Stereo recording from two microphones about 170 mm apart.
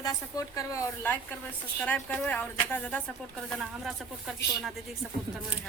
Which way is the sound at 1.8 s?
10° left (ahead or behind).